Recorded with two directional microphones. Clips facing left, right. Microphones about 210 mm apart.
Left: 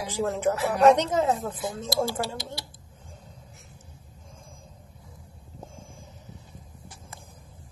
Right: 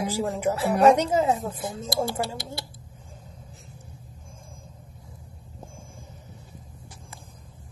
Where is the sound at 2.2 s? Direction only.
55° right (ahead or behind).